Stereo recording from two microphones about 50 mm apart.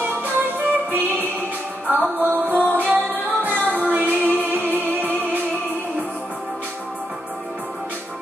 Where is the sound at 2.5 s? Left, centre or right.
Left.